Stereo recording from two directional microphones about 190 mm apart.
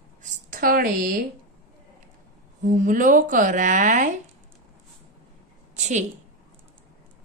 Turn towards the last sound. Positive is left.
turn(degrees=-40)  # may be behind; listen again after turning